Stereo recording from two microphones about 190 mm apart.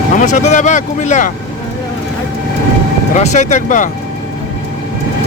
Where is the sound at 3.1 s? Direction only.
40° left (ahead or behind).